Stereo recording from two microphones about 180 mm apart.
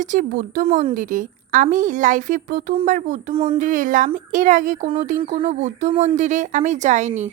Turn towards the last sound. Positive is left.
turn(degrees=-40)  # may be behind; listen again after turning